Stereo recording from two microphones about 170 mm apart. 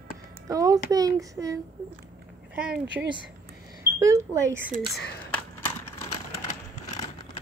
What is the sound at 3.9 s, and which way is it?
Speech, 15° right (ahead or behind).